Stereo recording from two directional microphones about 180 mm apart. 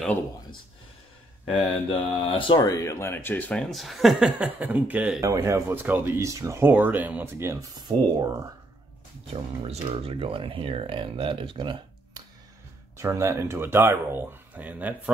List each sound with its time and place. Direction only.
1.5 s speech: 30° left (ahead or behind); by 7.5 s 10° right (ahead or behind)
7.9 s speech: 25° right (ahead or behind)
9.3 s speech: 35° right (ahead or behind)
12.9 s speech: 15° right (ahead or behind)